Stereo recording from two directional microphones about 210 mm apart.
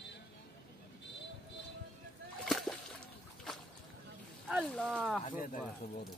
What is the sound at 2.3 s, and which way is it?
Splash, centre (ahead or behind).